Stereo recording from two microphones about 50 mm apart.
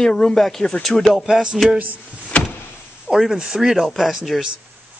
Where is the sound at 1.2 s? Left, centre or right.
Centre.